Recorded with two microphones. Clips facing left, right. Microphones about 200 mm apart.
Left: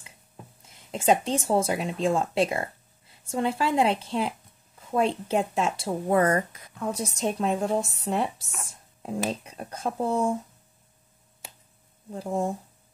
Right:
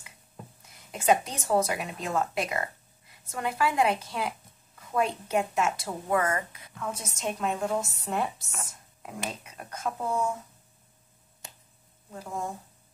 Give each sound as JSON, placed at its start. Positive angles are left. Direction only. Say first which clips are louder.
{"t": 0.6, "sound": "speech", "louder": "left 8 dB", "side_deg": 25}
{"t": 9.3, "sound": "speech", "louder": "left 7 dB", "side_deg": 30}
{"t": 12.1, "sound": "speech", "louder": "left 7 dB", "side_deg": 30}